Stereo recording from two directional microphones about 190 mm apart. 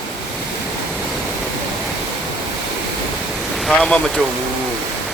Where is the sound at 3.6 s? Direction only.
5° left (ahead or behind).